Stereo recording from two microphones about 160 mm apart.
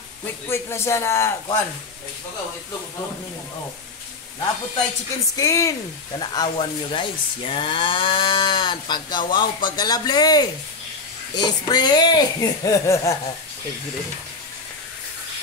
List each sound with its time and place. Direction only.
0.2 s a man's voice: 15° left (ahead or behind)
5.4 s speech: 20° left (ahead or behind)